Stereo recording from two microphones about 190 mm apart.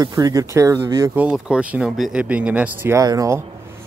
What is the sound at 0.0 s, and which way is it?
Speech, 20° right (ahead or behind).